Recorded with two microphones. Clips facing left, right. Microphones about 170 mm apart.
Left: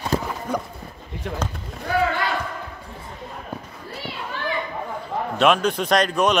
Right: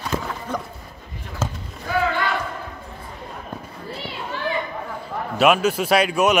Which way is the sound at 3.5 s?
10° left (ahead or behind).